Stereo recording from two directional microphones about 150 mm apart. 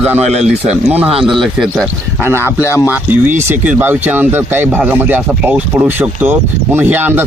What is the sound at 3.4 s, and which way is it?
Speech, 15° right (ahead or behind).